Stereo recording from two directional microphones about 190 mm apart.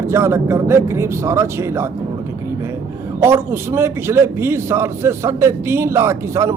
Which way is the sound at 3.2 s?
15° right (ahead or behind).